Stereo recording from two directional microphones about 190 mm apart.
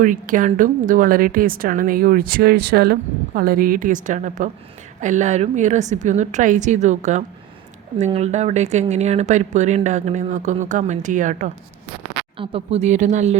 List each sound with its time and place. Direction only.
0.0 s a woman's voice: 45° right (ahead or behind)
12.4 s speech: 30° right (ahead or behind)